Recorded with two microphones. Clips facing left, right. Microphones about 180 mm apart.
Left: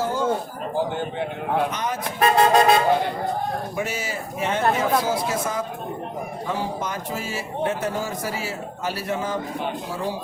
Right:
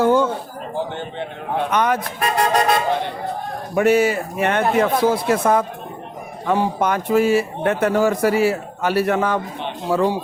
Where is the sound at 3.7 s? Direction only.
60° right (ahead or behind).